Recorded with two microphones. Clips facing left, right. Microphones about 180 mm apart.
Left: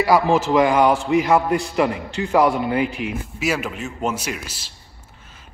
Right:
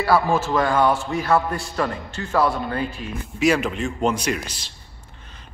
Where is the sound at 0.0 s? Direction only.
15° left (ahead or behind).